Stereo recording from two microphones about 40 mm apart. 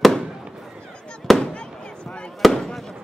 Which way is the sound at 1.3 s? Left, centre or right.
Centre.